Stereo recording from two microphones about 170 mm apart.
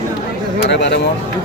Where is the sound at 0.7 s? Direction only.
90° left.